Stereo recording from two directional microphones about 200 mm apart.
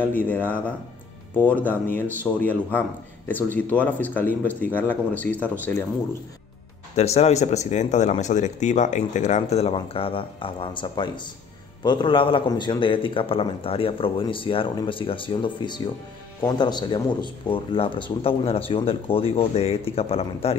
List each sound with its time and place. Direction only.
0.0 s speech: 10° left (ahead or behind)
7.0 s speech: 35° left (ahead or behind)